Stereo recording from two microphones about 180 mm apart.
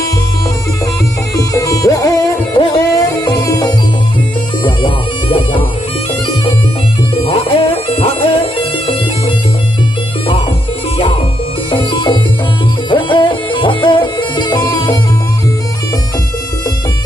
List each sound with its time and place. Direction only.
1.3 s music: 20° left (ahead or behind)
7.2 s music: 35° left (ahead or behind)
11.7 s music: 25° left (ahead or behind)